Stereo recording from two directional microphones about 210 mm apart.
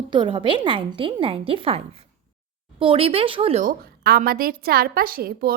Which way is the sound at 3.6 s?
45° right (ahead or behind).